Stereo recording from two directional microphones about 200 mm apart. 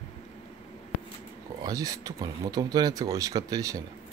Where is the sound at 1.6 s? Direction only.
20° right (ahead or behind).